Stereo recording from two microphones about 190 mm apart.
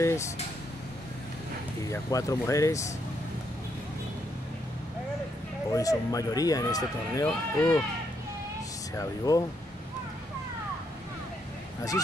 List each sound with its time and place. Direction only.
1.9 s speech: 15° left (ahead or behind)
5.7 s speech: 20° left (ahead or behind)
7.2 s speech: 5° left (ahead or behind)
8.9 s speech: 20° left (ahead or behind)